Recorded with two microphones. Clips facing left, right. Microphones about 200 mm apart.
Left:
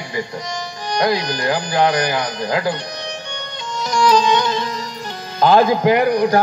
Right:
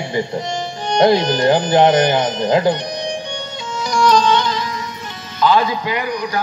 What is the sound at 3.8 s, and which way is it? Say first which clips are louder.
Music: right 1 dB; 5° left (ahead or behind).